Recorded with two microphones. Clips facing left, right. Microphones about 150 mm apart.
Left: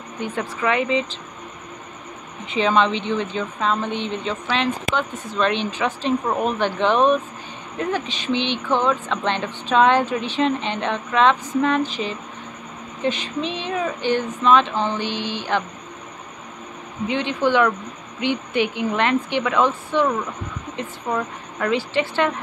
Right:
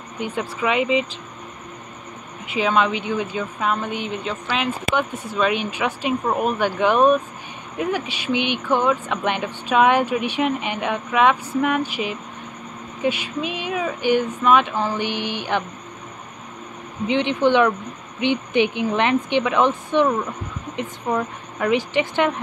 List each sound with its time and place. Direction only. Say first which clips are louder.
0.2 s speech: even; 10° right (ahead or behind)
2.4 s speech: left 1 dB; 5° right (ahead or behind)
17.1 s speech: right 2 dB; 20° right (ahead or behind)